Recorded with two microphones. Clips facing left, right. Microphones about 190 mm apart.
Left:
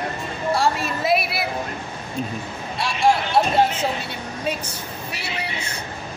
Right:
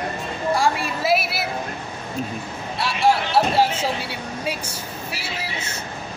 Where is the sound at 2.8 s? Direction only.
5° right (ahead or behind).